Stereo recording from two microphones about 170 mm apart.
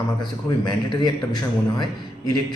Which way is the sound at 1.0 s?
25° left (ahead or behind).